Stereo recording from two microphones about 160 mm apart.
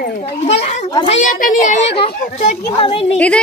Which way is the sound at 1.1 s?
55° left (ahead or behind).